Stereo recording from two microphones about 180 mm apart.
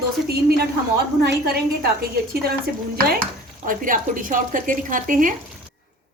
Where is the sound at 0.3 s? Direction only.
60° right (ahead or behind).